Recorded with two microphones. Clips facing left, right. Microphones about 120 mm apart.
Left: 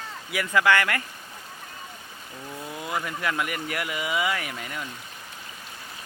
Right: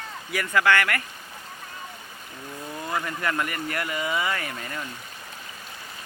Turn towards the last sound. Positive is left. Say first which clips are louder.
# even
turn(degrees=5)  # may be behind; listen again after turning